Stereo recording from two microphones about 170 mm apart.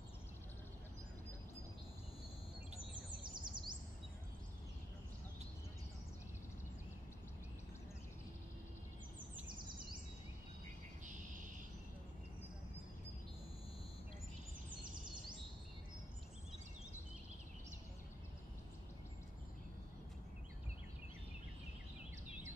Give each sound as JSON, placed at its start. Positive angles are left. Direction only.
{"t": 3.4, "sound": "bird vocalization", "side_deg": -25}